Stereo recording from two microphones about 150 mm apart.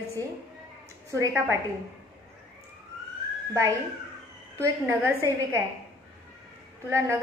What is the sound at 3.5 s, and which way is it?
Speech, 20° right (ahead or behind).